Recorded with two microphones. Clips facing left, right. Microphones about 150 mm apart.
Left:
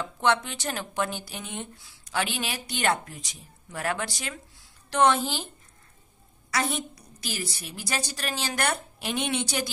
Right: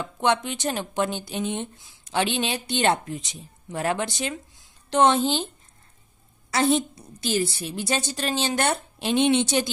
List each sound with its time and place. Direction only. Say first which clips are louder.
0.0 s speech: right 2 dB; 20° right (ahead or behind)
6.5 s speech: right 7 dB; 30° right (ahead or behind)